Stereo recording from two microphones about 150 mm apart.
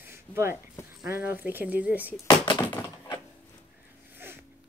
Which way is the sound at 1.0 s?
15° right (ahead or behind).